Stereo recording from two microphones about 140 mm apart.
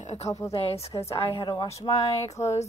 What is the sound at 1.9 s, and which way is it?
Speech, 35° left (ahead or behind).